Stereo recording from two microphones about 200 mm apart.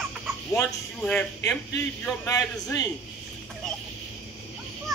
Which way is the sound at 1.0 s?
5° left (ahead or behind).